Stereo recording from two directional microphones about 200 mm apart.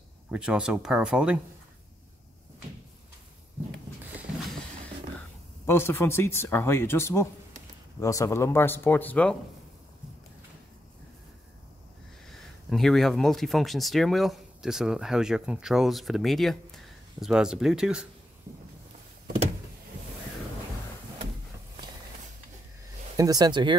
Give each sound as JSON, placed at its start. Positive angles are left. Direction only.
{"t": 0.3, "sound": "speech", "side_deg": -5}
{"t": 5.7, "sound": "speech", "side_deg": 10}
{"t": 12.3, "sound": "speech", "side_deg": 0}
{"t": 23.1, "sound": "speech", "side_deg": -20}